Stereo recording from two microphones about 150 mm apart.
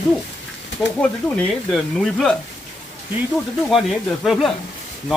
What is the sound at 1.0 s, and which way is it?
Speech, 5° left (ahead or behind).